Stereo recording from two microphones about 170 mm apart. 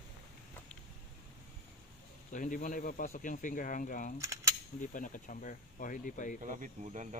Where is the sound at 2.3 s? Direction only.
50° left (ahead or behind).